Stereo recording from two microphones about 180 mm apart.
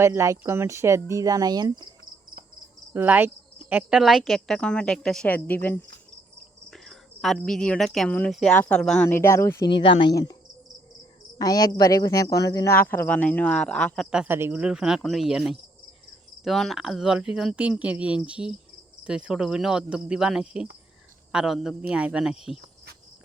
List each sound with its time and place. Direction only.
0.0 s speech: 15° right (ahead or behind)
2.9 s cricket: 10° right (ahead or behind)
7.9 s speech: 5° left (ahead or behind)
9.6 s speech: 30° left (ahead or behind)
11.3 s speech: 20° left (ahead or behind); by 15.5 s 5° right (ahead or behind)
16.4 s cricket: centre (ahead or behind)